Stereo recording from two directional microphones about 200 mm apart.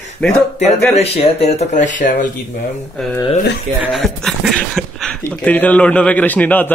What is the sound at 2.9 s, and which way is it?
Speech, 5° left (ahead or behind).